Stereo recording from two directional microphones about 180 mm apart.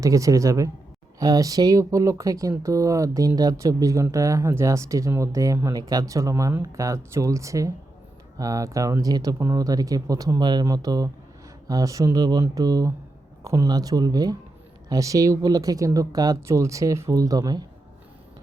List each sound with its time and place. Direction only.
0.0 s speech: 20° right (ahead or behind)